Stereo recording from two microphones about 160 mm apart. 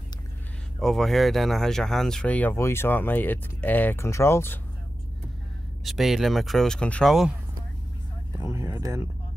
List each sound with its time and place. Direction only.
0.7 s speech: centre (ahead or behind)
5.9 s speech: centre (ahead or behind)
8.5 s speech: 20° right (ahead or behind)